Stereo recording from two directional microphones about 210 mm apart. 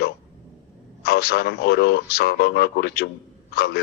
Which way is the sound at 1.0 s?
50° left (ahead or behind).